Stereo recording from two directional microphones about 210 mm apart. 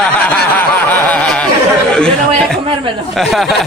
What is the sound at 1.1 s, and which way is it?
Speech, 5° left (ahead or behind).